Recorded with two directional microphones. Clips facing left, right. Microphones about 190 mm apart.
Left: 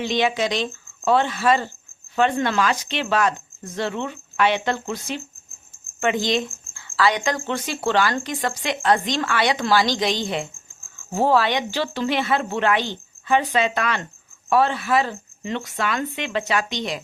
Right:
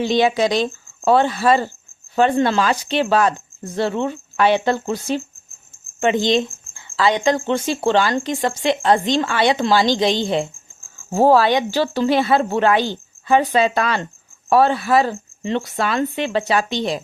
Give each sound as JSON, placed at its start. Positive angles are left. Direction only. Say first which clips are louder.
{"t": 0.0, "sound": "speech", "louder": "right 5 dB", "side_deg": -35}
{"t": 6.0, "sound": "speech", "louder": "right 5 dB", "side_deg": -25}